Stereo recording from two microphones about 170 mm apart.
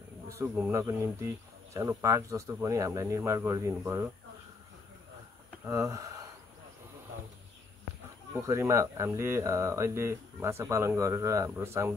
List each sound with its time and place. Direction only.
0.3 s speech: 15° right (ahead or behind)
5.7 s speech: 20° right (ahead or behind)
8.4 s speech: 20° right (ahead or behind)